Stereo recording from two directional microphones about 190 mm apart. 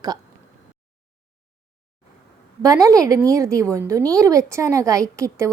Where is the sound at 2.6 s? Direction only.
15° right (ahead or behind).